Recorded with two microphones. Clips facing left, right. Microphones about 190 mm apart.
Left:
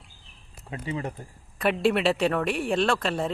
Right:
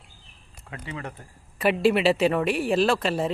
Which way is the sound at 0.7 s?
25° left (ahead or behind).